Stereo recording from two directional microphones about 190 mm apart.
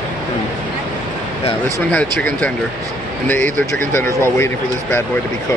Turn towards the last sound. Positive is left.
turn(degrees=10)  # may be behind; listen again after turning